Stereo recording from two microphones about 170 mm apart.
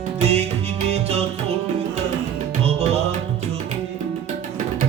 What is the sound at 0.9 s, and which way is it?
Music, 40° right (ahead or behind).